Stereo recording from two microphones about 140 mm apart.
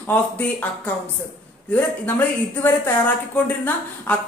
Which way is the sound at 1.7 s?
10° left (ahead or behind).